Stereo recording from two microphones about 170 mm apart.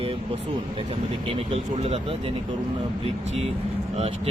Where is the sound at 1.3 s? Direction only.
35° right (ahead or behind).